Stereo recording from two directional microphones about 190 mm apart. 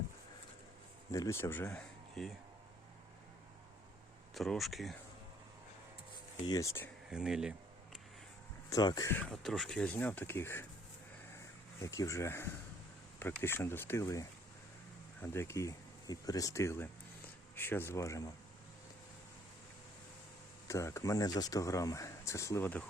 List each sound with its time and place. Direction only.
1.1 s speech: 15° left (ahead or behind)
4.4 s speech: centre (ahead or behind)
6.4 s speech: 20° left (ahead or behind)
7.1 s speech: 5° right (ahead or behind)
8.7 s speech: 20° left (ahead or behind)
11.3 s a sound: 15° left (ahead or behind)
13.1 s speech: 10° left (ahead or behind)
20.7 s speech: 15° left (ahead or behind)